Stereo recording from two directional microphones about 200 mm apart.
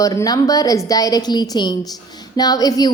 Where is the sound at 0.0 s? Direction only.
15° left (ahead or behind).